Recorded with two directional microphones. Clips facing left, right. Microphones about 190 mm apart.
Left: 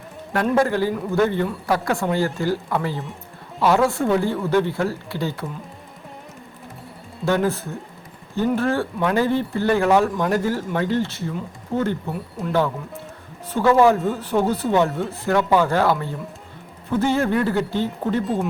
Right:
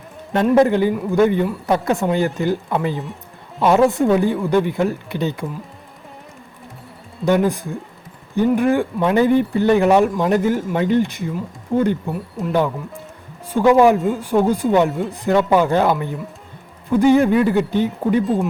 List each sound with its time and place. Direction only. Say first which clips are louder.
0.5 s speech: right 6 dB; 20° right (ahead or behind)
7.3 s speech: right 4 dB; 15° right (ahead or behind)